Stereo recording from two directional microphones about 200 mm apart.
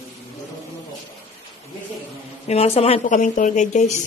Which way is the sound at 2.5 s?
30° left (ahead or behind).